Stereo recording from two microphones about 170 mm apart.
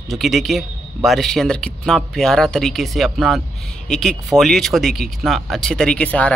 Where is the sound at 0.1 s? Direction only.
Centre (ahead or behind).